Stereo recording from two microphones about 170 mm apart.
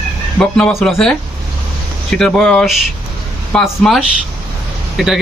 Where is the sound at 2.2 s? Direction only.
5° left (ahead or behind).